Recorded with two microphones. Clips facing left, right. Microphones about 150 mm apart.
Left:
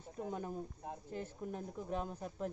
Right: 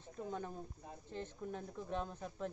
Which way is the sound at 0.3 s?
10° left (ahead or behind).